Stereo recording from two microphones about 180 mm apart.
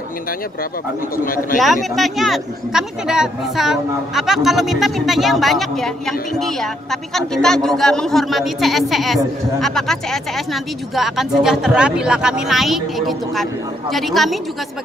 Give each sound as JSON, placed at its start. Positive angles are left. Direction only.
{"t": 1.1, "sound": "speech", "side_deg": 50}
{"t": 1.6, "sound": "speech", "side_deg": 0}